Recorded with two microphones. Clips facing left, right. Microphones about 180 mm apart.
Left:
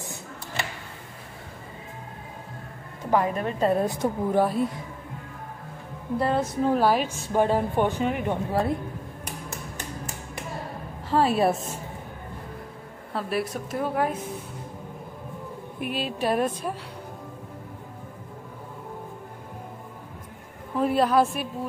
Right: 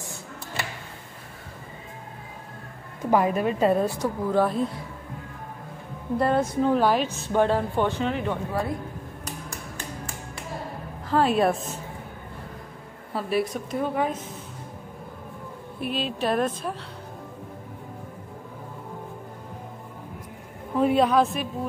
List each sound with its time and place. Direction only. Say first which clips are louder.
3.1 s a woman's voice: right 2 dB; 10° right (ahead or behind)
3.8 s a woman's voice: even; 15° left (ahead or behind)
6.1 s a woman's voice: right 2 dB; 5° left (ahead or behind)
9.5 s music: left 1 dB; 20° left (ahead or behind)
11.1 s a woman's voice: even; 5° left (ahead or behind)
13.1 s a woman's voice: right 2 dB; centre (ahead or behind)
15.8 s a woman's voice: right 1 dB; 10° left (ahead or behind)
20.7 s a woman's voice: right 1 dB; centre (ahead or behind)